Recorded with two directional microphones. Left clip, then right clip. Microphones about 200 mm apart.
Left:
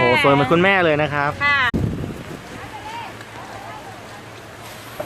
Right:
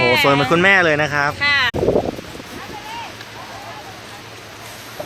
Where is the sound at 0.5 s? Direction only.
5° left (ahead or behind).